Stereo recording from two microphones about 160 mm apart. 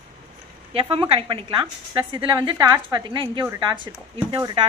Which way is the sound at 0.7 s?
35° right (ahead or behind).